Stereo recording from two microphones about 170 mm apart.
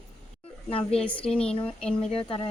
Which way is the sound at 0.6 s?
35° left (ahead or behind).